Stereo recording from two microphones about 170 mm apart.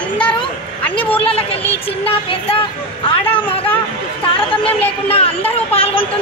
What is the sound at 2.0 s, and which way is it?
Speech, 35° left (ahead or behind).